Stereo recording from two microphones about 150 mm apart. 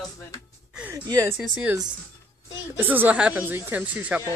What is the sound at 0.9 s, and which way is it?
Speech, 20° right (ahead or behind).